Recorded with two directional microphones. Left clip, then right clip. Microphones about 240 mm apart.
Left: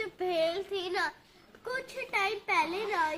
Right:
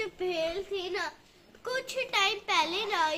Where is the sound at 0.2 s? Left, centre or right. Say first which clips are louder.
Left 3 dB; left.